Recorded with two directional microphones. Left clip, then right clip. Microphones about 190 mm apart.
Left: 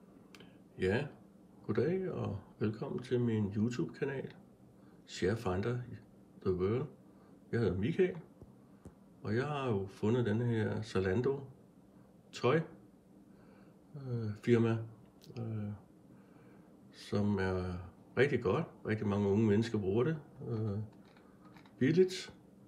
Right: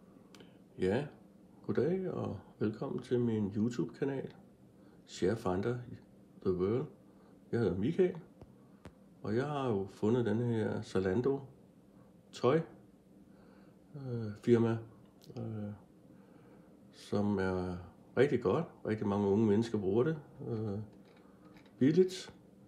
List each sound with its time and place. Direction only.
0.4 s a sound: 10° right (ahead or behind)
1.7 s speech: 10° right (ahead or behind)
9.2 s speech: 10° right (ahead or behind)
13.9 s speech: 10° right (ahead or behind)
17.0 s speech: 10° right (ahead or behind)